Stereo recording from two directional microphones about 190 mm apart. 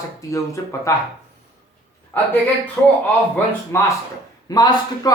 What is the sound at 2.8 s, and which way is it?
Speech, 5° left (ahead or behind).